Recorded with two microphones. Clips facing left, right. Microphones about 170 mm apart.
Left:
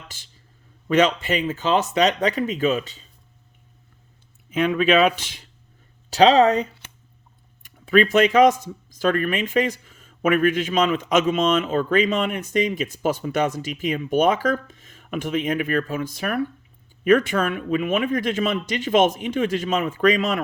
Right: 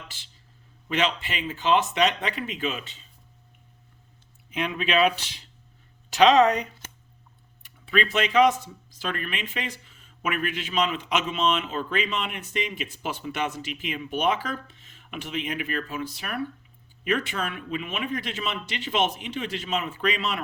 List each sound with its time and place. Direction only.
0.9 s speech: 45° left (ahead or behind)
4.6 s speech: 45° left (ahead or behind)
6.1 s speech: 35° left (ahead or behind)
7.6 s speech: 45° left (ahead or behind)